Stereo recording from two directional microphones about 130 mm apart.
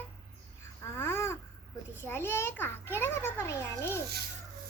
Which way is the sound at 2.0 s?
15° left (ahead or behind).